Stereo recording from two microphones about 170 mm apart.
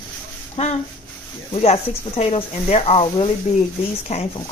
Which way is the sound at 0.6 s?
40° left (ahead or behind).